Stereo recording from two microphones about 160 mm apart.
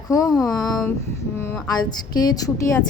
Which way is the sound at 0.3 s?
5° left (ahead or behind).